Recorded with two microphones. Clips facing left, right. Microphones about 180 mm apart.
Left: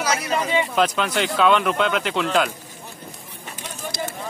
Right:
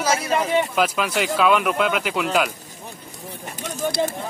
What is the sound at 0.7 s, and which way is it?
Speech, 5° right (ahead or behind).